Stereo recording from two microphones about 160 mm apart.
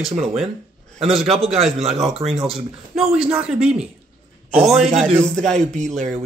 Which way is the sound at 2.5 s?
40° right (ahead or behind).